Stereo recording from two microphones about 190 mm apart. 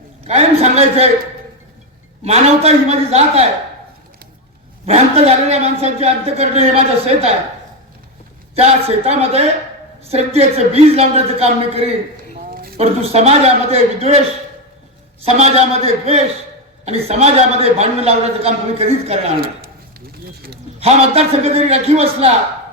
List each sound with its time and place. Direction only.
0.3 s a man's voice: 35° right (ahead or behind)
2.2 s a man's voice: 35° right (ahead or behind)
4.9 s a man's voice: 35° right (ahead or behind)
8.5 s a man's voice: 35° right (ahead or behind)
12.3 s a sound: 45° right (ahead or behind)
12.8 s a man's voice: 35° right (ahead or behind)
15.2 s a man's voice: 35° right (ahead or behind)
19.4 s a sound: 50° right (ahead or behind)
20.8 s a man's voice: 30° right (ahead or behind)